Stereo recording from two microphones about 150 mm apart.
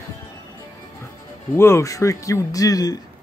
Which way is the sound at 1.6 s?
20° left (ahead or behind).